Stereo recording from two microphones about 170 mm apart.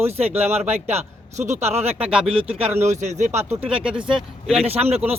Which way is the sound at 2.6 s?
40° right (ahead or behind).